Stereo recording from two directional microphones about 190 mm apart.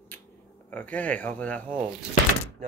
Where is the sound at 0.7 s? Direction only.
10° left (ahead or behind).